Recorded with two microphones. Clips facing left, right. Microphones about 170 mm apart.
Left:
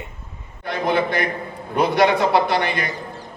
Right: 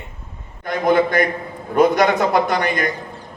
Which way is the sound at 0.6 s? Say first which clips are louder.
Right 4 dB; 45° right (ahead or behind).